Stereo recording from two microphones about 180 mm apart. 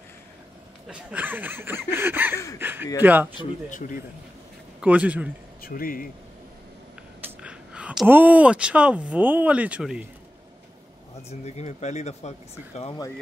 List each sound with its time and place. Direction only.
0.8 s speech: 10° right (ahead or behind)
4.8 s speech: 10° right (ahead or behind)
5.6 s speech: 55° left (ahead or behind)
7.2 s speech: 5° right (ahead or behind)
11.2 s speech: 40° left (ahead or behind)